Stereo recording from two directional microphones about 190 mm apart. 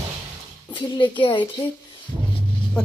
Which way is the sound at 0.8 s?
25° left (ahead or behind).